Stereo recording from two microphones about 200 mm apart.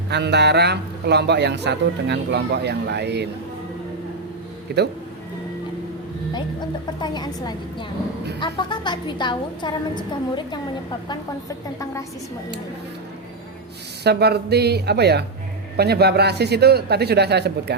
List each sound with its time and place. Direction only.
0.1 s a man's voice: 55° right (ahead or behind)
4.7 s a man's voice: 55° right (ahead or behind)
7.0 s a woman's voice: 20° left (ahead or behind)
14.0 s a man's voice: 55° right (ahead or behind)